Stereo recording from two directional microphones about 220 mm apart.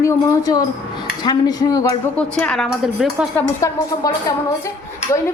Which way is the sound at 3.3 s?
15° left (ahead or behind).